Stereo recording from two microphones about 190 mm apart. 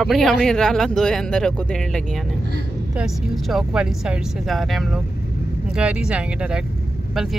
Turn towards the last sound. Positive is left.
turn(degrees=0)  # may be behind; listen again after turning